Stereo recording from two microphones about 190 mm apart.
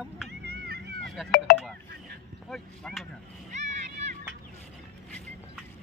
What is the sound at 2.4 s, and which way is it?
Speech, centre (ahead or behind).